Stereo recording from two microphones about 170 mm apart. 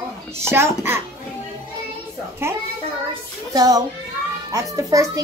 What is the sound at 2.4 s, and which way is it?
A child's voice, 15° right (ahead or behind).